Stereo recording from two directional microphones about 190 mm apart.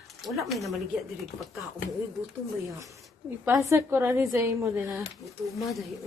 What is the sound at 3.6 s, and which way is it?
A woman's voice, 15° right (ahead or behind).